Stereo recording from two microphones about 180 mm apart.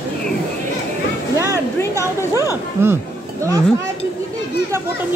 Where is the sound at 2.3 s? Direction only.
15° right (ahead or behind).